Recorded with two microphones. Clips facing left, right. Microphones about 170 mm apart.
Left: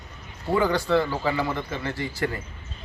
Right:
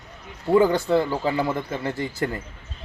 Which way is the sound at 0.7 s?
20° right (ahead or behind).